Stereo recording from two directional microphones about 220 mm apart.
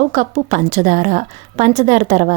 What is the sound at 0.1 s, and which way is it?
A woman's voice, 30° right (ahead or behind).